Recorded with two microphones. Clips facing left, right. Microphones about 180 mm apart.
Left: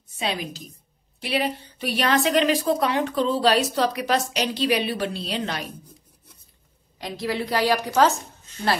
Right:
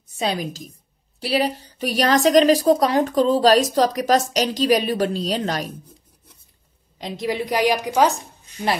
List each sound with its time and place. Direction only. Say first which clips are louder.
0.2 s a woman's voice: right 4 dB; 40° right (ahead or behind)
7.0 s a woman's voice: right 2 dB; 20° right (ahead or behind)